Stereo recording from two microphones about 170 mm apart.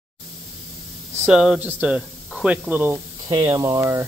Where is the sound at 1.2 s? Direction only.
5° right (ahead or behind).